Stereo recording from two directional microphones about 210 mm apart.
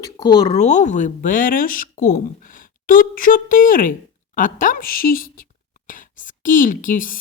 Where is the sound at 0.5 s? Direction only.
35° left (ahead or behind).